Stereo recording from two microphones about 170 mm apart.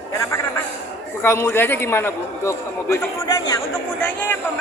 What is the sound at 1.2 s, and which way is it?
A man's voice, 15° left (ahead or behind).